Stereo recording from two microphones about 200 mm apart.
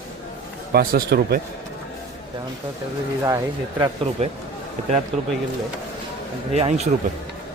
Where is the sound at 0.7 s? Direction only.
50° right (ahead or behind).